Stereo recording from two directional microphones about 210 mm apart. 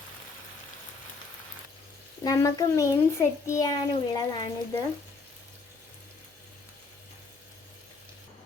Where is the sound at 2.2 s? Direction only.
15° left (ahead or behind).